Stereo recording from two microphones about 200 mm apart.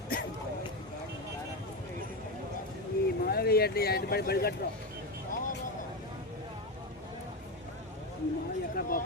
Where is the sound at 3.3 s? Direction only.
50° left (ahead or behind).